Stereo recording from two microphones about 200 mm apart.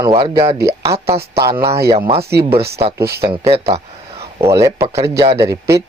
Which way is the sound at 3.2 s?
30° right (ahead or behind).